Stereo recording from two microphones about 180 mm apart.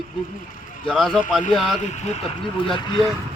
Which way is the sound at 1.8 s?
40° left (ahead or behind).